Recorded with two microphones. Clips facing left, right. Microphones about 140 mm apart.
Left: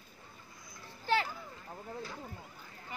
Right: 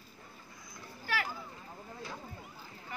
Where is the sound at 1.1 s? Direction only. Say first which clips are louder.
Left 5 dB; 25° left (ahead or behind).